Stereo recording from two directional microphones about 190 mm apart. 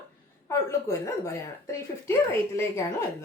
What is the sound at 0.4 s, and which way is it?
Speech, 15° left (ahead or behind).